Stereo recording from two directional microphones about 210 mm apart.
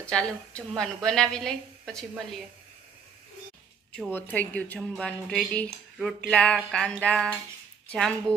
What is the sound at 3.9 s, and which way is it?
Speech, 5° left (ahead or behind).